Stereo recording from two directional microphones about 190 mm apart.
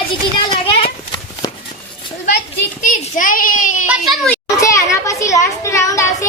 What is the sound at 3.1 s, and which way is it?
Child singing, 45° left (ahead or behind).